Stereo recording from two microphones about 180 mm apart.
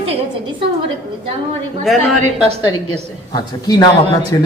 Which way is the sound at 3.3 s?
25° left (ahead or behind).